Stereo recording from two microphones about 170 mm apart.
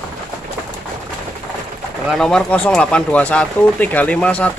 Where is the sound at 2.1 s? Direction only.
5° left (ahead or behind).